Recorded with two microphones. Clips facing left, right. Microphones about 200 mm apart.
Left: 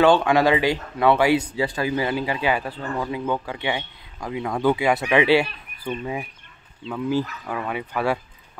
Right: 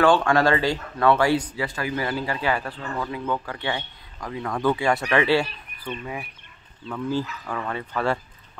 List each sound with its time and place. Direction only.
0.0 s speech: 20° left (ahead or behind)